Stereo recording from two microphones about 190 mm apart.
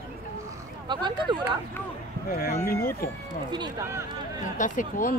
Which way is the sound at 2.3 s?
50° left (ahead or behind).